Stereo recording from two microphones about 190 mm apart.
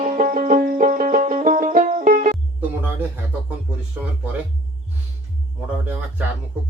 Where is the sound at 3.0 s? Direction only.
10° right (ahead or behind).